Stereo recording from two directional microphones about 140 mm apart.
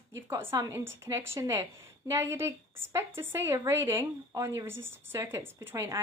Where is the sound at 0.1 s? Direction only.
15° right (ahead or behind).